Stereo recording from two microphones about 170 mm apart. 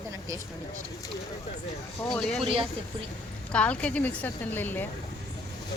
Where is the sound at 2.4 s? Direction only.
35° right (ahead or behind).